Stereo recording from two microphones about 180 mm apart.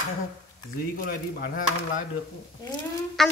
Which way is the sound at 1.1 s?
50° left (ahead or behind).